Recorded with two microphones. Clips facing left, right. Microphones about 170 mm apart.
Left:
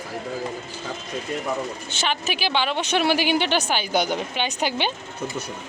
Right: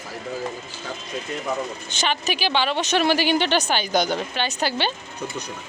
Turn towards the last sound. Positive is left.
turn(degrees=15)  # may be behind; listen again after turning